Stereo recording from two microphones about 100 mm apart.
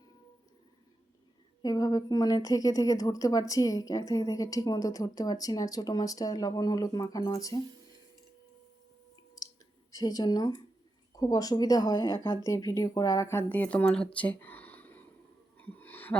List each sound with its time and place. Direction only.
1.6 s speech: 40° left (ahead or behind)
10.0 s speech: 40° left (ahead or behind)
13.3 s speech: 15° left (ahead or behind)
15.5 s a sound: 15° left (ahead or behind)